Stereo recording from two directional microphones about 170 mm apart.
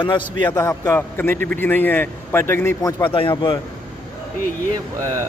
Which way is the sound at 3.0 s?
30° left (ahead or behind).